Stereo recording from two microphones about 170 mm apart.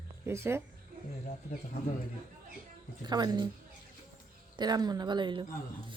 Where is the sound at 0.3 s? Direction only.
15° right (ahead or behind).